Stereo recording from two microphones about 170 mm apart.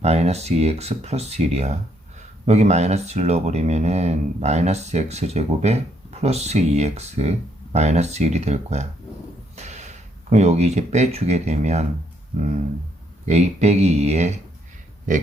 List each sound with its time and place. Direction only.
0.0 s speech: 40° right (ahead or behind)
13.2 s speech: 40° right (ahead or behind)